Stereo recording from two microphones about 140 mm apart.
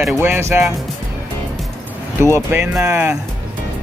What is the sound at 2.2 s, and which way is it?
Speech, 20° right (ahead or behind).